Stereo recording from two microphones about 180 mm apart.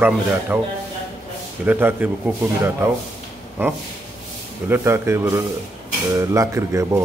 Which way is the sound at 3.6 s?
10° right (ahead or behind).